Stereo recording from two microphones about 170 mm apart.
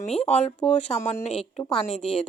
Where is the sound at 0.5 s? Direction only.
5° left (ahead or behind).